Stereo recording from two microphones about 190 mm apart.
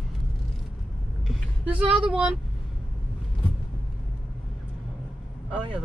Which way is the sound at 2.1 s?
5° right (ahead or behind).